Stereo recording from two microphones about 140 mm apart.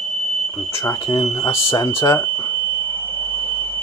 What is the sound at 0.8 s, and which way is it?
Speech, 25° left (ahead or behind).